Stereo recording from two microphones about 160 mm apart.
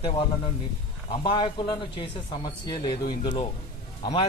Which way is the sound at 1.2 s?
30° left (ahead or behind).